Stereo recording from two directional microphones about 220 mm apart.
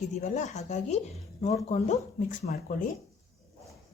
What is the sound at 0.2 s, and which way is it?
Speech, 30° left (ahead or behind).